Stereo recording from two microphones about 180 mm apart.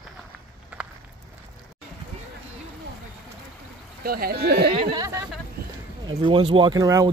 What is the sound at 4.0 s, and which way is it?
Speech, 55° right (ahead or behind).